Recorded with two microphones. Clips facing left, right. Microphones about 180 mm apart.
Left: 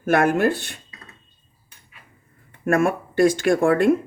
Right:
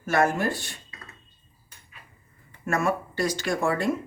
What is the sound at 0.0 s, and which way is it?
Speech, 60° left (ahead or behind).